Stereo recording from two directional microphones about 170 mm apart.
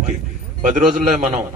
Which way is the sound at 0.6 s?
50° right (ahead or behind).